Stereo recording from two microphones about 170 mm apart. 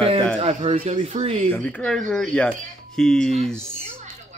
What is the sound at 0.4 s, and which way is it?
Speech, 40° right (ahead or behind).